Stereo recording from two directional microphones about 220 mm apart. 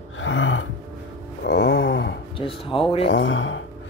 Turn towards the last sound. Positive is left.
turn(degrees=60)  # may be behind; listen again after turning